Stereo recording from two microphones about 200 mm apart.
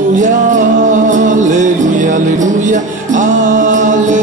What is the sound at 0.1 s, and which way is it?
Music, 40° right (ahead or behind).